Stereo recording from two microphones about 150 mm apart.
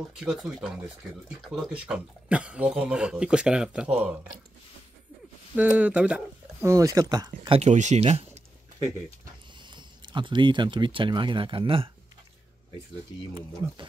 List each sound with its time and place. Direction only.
0.1 s speech: 5° right (ahead or behind)
5.6 s speech: 10° right (ahead or behind)
6.7 s speech: 25° right (ahead or behind)
7.5 s speech: 50° right (ahead or behind)
9.8 s speech: 30° right (ahead or behind)